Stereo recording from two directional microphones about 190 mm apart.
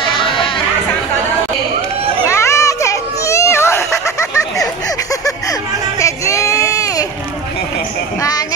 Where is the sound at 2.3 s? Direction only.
15° left (ahead or behind).